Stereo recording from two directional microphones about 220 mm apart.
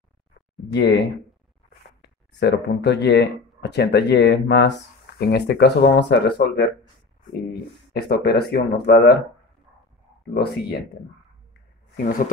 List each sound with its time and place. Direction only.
0.7 s speech: 55° left (ahead or behind)
7.9 s speech: 45° left (ahead or behind)
10.3 s speech: 45° left (ahead or behind)